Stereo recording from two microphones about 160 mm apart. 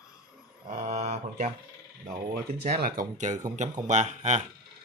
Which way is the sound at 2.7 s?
65° right (ahead or behind).